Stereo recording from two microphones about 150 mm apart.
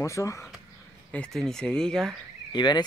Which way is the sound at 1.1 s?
5° left (ahead or behind).